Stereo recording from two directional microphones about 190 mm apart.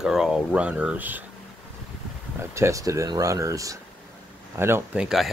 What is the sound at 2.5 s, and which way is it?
Speech, 15° right (ahead or behind).